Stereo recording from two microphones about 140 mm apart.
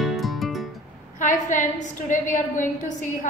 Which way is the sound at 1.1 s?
65° left (ahead or behind).